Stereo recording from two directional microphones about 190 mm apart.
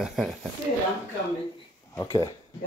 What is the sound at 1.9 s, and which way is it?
Speech, 15° left (ahead or behind).